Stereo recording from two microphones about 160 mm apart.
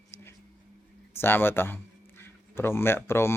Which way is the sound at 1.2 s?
15° left (ahead or behind).